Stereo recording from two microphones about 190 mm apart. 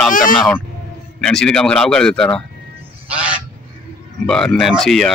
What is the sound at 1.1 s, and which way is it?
Speech, 5° left (ahead or behind).